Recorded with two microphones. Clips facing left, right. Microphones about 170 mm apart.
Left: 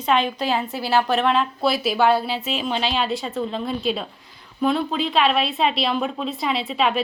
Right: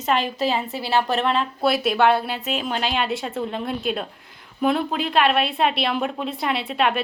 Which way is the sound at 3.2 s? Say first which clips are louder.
Left 1 dB; 10° right (ahead or behind).